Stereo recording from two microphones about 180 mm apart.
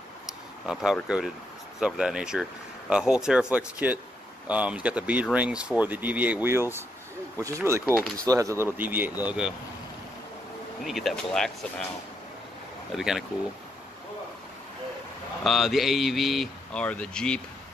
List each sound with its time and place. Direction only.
1.0 s speech: 5° right (ahead or behind)
10.8 s speech: centre (ahead or behind)
12.9 s speech: centre (ahead or behind)
15.4 s speech: centre (ahead or behind)